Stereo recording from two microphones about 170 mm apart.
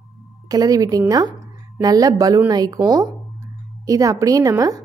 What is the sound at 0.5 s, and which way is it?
A woman's voice, 20° right (ahead or behind).